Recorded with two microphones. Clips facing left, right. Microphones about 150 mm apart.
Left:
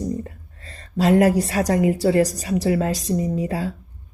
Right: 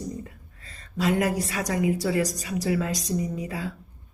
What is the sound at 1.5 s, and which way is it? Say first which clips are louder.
Speech: left 6 dB; 35° left (ahead or behind).